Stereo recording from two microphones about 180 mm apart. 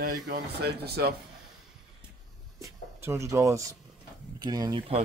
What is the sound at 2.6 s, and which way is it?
Speech, 15° right (ahead or behind).